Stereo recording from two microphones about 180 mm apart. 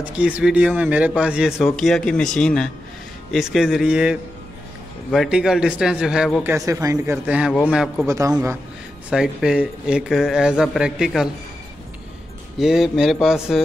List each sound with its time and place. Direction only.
0.2 s speech: 5° right (ahead or behind)
6.5 s speech: 15° right (ahead or behind)
8.1 s speech: 15° right (ahead or behind)
9.1 s speech: 5° right (ahead or behind)
12.5 s speech: centre (ahead or behind)